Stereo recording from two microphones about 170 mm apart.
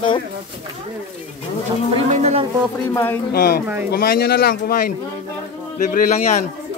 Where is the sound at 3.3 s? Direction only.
65° left (ahead or behind).